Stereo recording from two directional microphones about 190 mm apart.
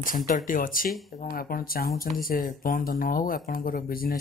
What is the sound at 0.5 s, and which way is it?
Speech, 45° left (ahead or behind).